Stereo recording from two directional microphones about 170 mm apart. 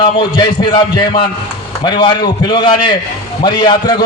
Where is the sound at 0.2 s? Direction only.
30° left (ahead or behind).